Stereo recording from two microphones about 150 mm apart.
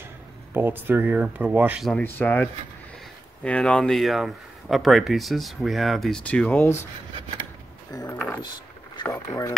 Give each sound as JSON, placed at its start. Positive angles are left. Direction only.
{"t": 0.5, "sound": "speech", "side_deg": -15}
{"t": 2.0, "sound": "speech", "side_deg": 10}
{"t": 6.6, "sound": "speech", "side_deg": 20}
{"t": 7.9, "sound": "speech", "side_deg": 25}